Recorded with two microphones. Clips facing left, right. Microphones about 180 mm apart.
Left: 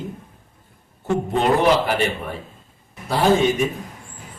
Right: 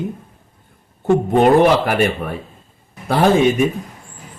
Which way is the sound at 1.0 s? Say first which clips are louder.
Right 7 dB; 55° right (ahead or behind).